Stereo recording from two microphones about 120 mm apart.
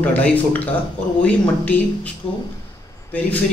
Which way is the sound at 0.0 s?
10° left (ahead or behind).